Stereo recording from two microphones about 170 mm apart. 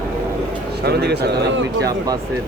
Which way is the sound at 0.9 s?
80° right.